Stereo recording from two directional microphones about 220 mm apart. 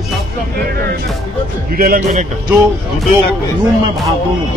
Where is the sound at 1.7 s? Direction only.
40° right (ahead or behind).